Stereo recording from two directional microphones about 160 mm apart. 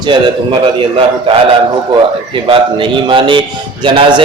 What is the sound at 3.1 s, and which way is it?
A man's voice, 30° right (ahead or behind).